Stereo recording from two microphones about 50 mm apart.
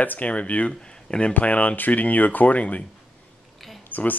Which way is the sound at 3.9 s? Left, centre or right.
Left.